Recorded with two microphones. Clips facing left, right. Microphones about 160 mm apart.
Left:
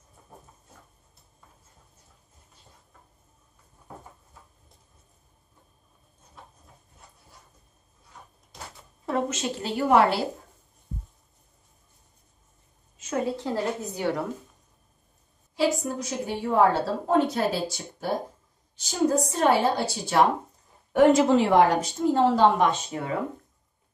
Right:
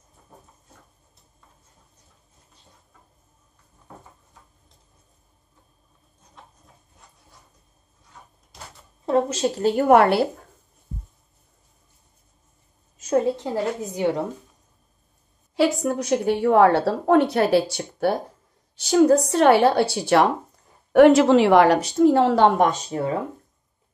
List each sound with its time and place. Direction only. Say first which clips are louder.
9.0 s a woman's voice: right 7 dB; 30° right (ahead or behind); by 10.2 s 60° right (ahead or behind)
12.9 s a sound: right 9 dB; 40° right (ahead or behind)
13.4 s a woman's voice: right 3 dB; 20° right (ahead or behind)
15.5 s a woman's voice: right 5 dB; 65° right (ahead or behind)
22.6 s speech: right 4 dB; 40° right (ahead or behind)